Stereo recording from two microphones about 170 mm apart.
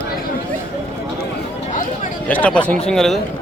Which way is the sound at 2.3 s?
10° left (ahead or behind).